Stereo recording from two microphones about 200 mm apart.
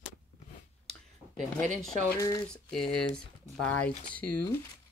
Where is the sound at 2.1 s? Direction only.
15° left (ahead or behind).